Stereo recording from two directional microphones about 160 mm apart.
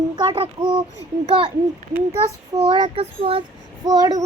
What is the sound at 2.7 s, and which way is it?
Speech, 30° right (ahead or behind).